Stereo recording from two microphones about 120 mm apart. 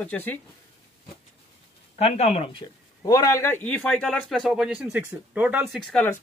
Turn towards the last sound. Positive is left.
turn(degrees=5)  # may be behind; listen again after turning